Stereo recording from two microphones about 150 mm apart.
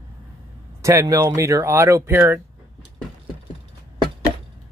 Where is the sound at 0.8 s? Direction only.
20° right (ahead or behind).